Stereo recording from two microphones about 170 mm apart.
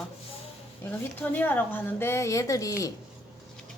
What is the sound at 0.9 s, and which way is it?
Speech, 10° left (ahead or behind).